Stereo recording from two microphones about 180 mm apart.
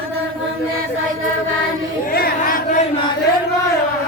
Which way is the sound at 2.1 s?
55° left (ahead or behind).